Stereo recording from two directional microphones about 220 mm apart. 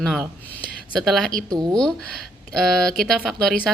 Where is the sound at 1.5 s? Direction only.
20° right (ahead or behind).